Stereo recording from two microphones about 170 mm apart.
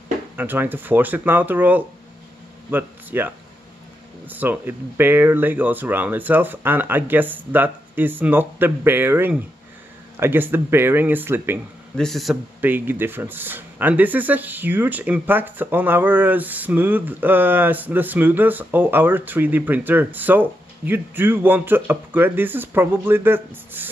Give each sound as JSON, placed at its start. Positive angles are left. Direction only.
{"t": 0.4, "sound": "speech", "side_deg": -10}
{"t": 12.0, "sound": "a man's voice", "side_deg": 0}
{"t": 12.5, "sound": "speech", "side_deg": -10}